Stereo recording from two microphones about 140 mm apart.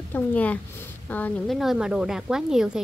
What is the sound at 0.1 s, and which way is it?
A woman's voice, 10° left (ahead or behind).